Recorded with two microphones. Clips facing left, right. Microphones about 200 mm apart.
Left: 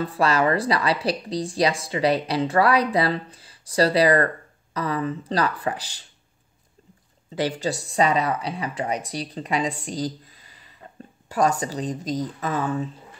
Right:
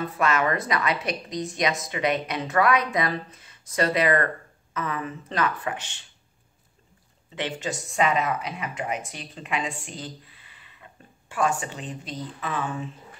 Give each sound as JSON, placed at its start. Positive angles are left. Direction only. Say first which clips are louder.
{"t": 0.0, "sound": "a woman's voice", "louder": "left 3 dB", "side_deg": 30}
{"t": 7.3, "sound": "a woman's voice", "louder": "left 5 dB", "side_deg": 35}